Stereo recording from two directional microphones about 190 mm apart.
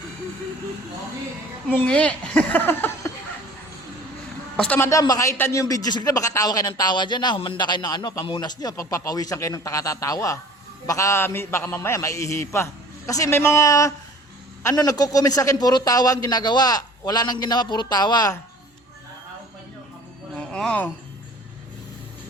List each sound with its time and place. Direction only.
1.7 s a man's voice: 10° left (ahead or behind)
4.5 s a man's voice: 5° left (ahead or behind)
20.3 s a sound: 5° left (ahead or behind)